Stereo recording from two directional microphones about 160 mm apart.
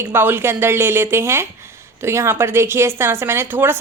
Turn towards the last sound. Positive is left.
turn(degrees=-15)  # may be behind; listen again after turning